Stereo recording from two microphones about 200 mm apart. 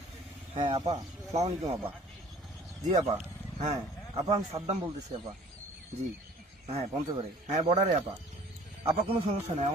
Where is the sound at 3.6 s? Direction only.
35° right (ahead or behind).